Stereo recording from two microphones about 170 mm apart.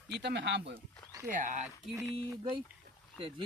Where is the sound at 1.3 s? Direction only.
50° right (ahead or behind).